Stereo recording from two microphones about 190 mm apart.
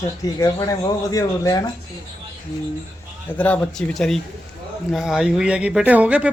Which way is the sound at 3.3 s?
5° left (ahead or behind).